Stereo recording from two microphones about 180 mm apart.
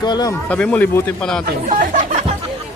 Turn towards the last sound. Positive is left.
turn(degrees=-45)  # may be behind; listen again after turning